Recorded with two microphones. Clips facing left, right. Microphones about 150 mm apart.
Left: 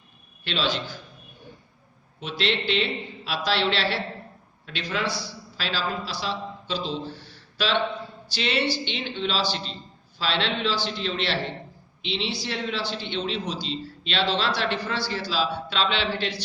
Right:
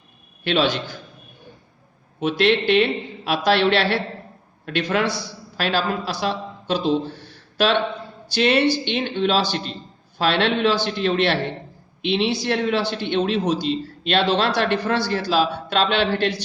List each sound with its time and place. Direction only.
0.4 s a man's voice: 55° right (ahead or behind)
2.4 s a man's voice: 55° right (ahead or behind)
5.0 s a man's voice: 20° right (ahead or behind)
5.5 s a man's voice: 55° right (ahead or behind)
7.1 s a sound: 55° right (ahead or behind)
8.4 s a man's voice: 55° right (ahead or behind)